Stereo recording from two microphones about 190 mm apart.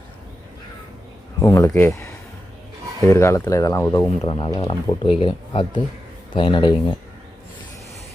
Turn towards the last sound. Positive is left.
turn(degrees=25)  # may be behind; listen again after turning